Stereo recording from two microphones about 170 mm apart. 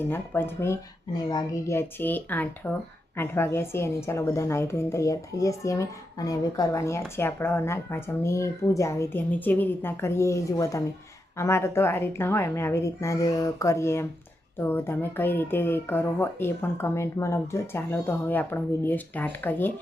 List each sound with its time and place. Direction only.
0.0 s a woman's voice: 15° left (ahead or behind)